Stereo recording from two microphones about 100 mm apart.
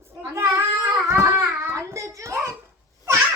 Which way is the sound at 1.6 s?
30° right (ahead or behind).